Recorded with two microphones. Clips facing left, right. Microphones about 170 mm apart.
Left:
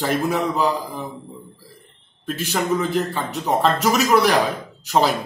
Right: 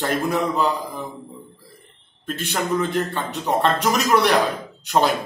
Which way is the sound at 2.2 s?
5° left (ahead or behind).